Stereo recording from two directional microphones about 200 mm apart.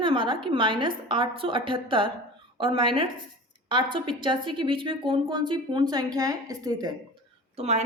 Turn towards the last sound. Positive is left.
turn(degrees=-35)  # may be behind; listen again after turning